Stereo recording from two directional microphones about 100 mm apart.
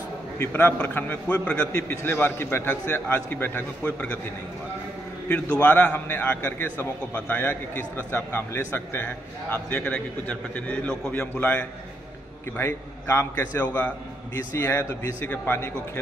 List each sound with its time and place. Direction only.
0.4 s a man's voice: 20° left (ahead or behind)
1.7 s a man's voice: 25° left (ahead or behind)
5.6 s a man's voice: 15° left (ahead or behind)